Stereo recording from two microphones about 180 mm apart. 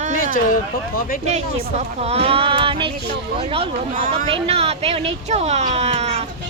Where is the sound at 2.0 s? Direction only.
35° right (ahead or behind).